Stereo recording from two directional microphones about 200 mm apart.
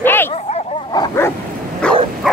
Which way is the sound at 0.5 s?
20° left (ahead or behind).